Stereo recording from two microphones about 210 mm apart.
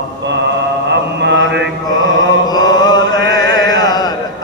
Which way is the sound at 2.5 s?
20° left (ahead or behind).